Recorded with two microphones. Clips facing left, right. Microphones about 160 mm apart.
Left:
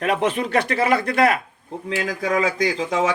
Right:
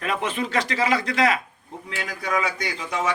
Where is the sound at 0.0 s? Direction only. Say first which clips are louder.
Left 5 dB; 75° left (ahead or behind); by 1.4 s 55° left (ahead or behind).